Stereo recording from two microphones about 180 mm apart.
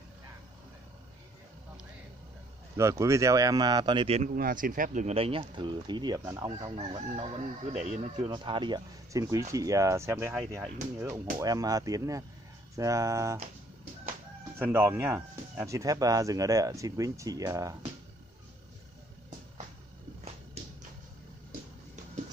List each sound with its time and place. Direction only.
2.8 s speech: 15° right (ahead or behind)
4.2 s speech: 50° right (ahead or behind)
8.3 s speech: 25° right (ahead or behind)
14.6 s speech: 10° right (ahead or behind)